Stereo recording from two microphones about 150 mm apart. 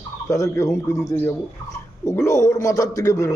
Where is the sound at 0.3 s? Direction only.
20° left (ahead or behind).